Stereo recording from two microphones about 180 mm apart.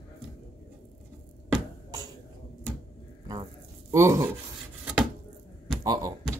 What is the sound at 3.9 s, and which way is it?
Speech, 15° right (ahead or behind).